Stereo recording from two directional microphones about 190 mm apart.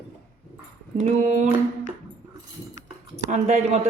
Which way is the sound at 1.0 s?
40° right (ahead or behind).